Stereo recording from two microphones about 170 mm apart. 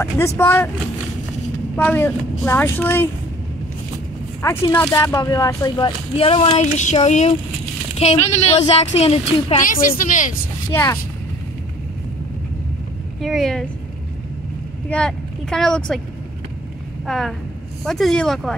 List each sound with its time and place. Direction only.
0.4 s speech: 15° left (ahead or behind)
1.8 s speech: 10° left (ahead or behind)
4.6 s speech: 15° left (ahead or behind); by 9.2 s 35° left (ahead or behind)
9.5 s a woman's voice: 55° left (ahead or behind)
10.7 s speech: 15° left (ahead or behind)
13.2 s speech: centre (ahead or behind)
14.9 s speech: 5° left (ahead or behind)
17.0 s speech: centre (ahead or behind)